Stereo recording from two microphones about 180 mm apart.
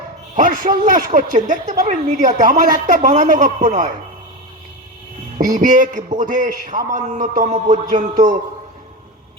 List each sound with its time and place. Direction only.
0.3 s a man's voice: 45° right (ahead or behind)
5.4 s speech: 45° right (ahead or behind)